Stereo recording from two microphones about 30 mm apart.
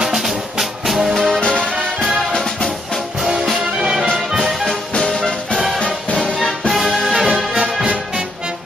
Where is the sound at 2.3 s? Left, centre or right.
Centre.